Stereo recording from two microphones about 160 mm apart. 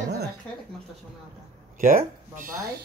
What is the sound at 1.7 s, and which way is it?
Speech, 55° right (ahead or behind).